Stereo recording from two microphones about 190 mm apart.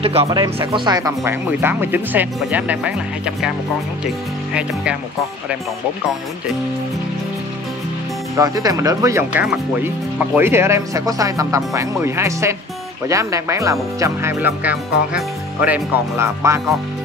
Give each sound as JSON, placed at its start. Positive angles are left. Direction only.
{"t": 0.0, "sound": "speech", "side_deg": -30}
{"t": 8.4, "sound": "speech", "side_deg": -15}